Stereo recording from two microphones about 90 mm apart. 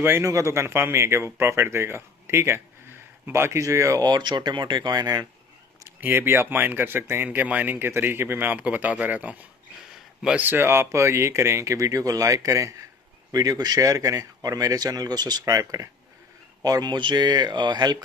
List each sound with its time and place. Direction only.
0.0 s speech: 25° right (ahead or behind)
4.0 s speech: 55° right (ahead or behind)
6.0 s speech: 25° right (ahead or behind)
16.6 s speech: 50° right (ahead or behind)